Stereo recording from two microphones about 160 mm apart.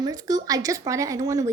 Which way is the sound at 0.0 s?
25° right (ahead or behind).